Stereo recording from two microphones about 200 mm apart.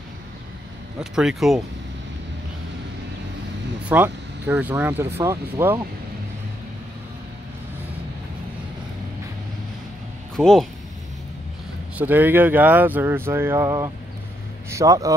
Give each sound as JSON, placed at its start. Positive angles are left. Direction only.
{"t": 1.1, "sound": "speech", "side_deg": 0}
{"t": 3.9, "sound": "speech", "side_deg": -10}
{"t": 10.3, "sound": "speech", "side_deg": 0}
{"t": 12.0, "sound": "speech", "side_deg": -10}